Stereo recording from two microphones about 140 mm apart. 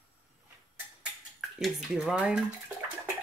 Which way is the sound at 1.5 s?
Centre (ahead or behind).